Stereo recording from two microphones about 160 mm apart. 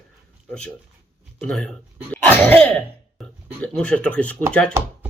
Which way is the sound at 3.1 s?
5° left (ahead or behind).